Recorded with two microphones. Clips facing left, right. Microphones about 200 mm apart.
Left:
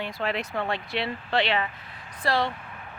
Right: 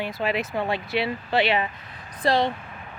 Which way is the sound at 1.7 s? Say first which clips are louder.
Right 2 dB; 40° right (ahead or behind).